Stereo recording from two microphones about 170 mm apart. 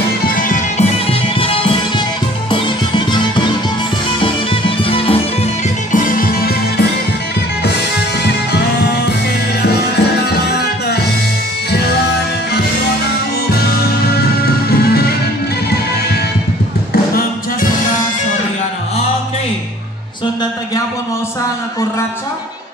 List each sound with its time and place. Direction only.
0.3 s music: 50° left (ahead or behind)
1.4 s music: 30° left (ahead or behind)
5.9 s music: 50° left (ahead or behind)
9.6 s music: 70° left (ahead or behind)
14.9 s music: 65° left (ahead or behind)
16.9 s music: 60° left (ahead or behind)